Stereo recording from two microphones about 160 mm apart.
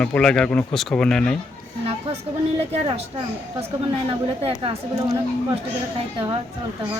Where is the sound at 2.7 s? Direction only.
40° right (ahead or behind).